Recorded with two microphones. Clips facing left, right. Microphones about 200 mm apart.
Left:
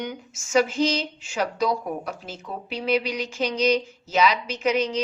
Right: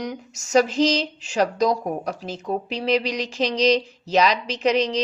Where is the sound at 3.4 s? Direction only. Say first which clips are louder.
Right 3 dB; 35° right (ahead or behind).